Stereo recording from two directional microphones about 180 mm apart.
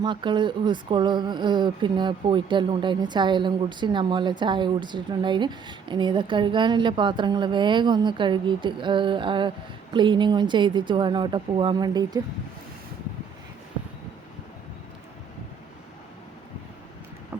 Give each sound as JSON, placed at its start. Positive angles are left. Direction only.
{"t": 0.0, "sound": "speech", "side_deg": -25}